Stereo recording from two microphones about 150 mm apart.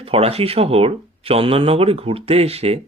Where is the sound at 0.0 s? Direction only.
40° right (ahead or behind).